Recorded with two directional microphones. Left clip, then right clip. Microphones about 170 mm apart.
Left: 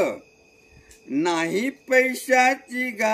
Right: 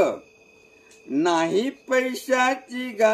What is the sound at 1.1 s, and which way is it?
Speech, 25° left (ahead or behind).